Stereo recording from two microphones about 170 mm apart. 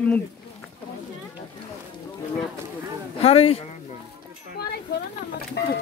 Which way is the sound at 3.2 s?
35° left (ahead or behind).